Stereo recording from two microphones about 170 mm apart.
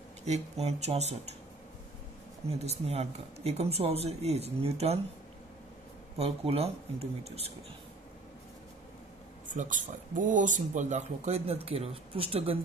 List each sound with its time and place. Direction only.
0.2 s speech: 40° right (ahead or behind)
2.5 s speech: 40° right (ahead or behind)
6.1 s speech: 35° right (ahead or behind)
9.5 s speech: 50° right (ahead or behind)